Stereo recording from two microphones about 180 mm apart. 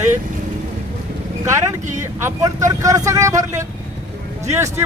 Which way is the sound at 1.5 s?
15° right (ahead or behind).